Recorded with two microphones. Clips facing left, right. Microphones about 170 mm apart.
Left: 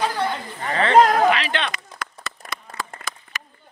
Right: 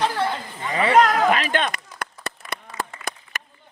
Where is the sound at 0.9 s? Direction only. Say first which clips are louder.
Left 3 dB; 30° left (ahead or behind).